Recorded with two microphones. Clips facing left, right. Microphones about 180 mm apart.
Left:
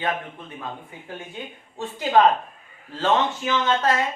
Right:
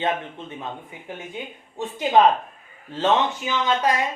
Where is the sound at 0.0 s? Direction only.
25° right (ahead or behind).